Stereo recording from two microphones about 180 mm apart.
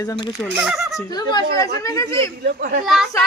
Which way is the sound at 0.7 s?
Centre (ahead or behind).